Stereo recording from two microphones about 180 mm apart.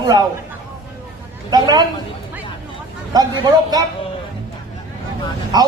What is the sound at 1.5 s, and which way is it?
Speech, 20° right (ahead or behind).